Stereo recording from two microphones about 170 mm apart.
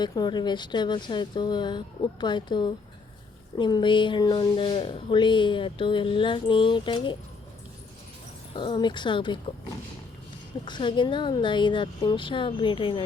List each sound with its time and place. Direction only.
0.0 s a woman's voice: 25° left (ahead or behind)
8.5 s a woman's voice: 30° left (ahead or behind)
10.7 s a woman's voice: 25° left (ahead or behind)